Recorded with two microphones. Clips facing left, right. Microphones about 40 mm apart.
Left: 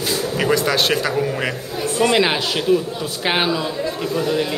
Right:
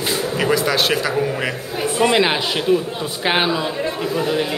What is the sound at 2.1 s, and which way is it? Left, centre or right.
Speech, centre.